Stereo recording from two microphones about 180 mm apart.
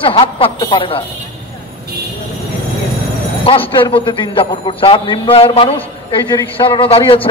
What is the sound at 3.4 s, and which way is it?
A man's voice, 30° left (ahead or behind).